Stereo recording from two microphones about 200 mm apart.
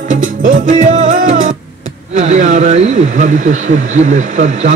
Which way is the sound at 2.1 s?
35° right (ahead or behind).